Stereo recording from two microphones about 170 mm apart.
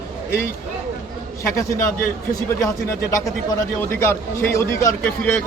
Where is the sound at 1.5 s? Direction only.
15° left (ahead or behind).